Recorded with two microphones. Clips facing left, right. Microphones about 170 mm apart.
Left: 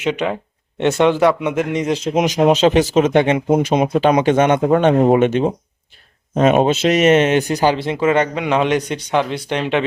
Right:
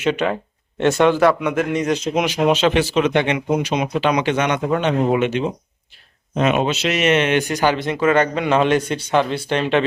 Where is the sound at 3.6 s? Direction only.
50° left (ahead or behind).